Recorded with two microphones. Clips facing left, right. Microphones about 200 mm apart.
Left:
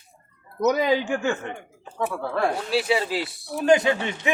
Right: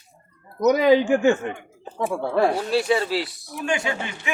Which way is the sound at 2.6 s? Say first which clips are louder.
Right 2 dB; 5° left (ahead or behind).